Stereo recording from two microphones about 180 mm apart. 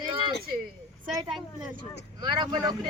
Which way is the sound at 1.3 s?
5° right (ahead or behind).